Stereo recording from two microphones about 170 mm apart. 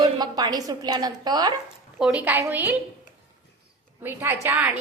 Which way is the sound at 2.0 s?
5° right (ahead or behind).